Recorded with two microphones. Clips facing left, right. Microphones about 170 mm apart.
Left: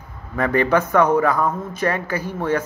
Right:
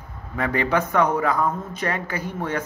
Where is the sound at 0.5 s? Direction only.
15° right (ahead or behind).